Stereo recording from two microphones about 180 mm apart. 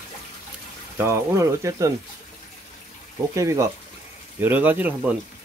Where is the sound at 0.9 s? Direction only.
15° right (ahead or behind).